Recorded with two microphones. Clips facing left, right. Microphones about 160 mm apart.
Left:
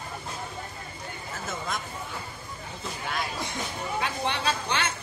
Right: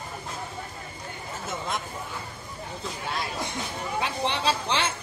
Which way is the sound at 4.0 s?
30° right (ahead or behind).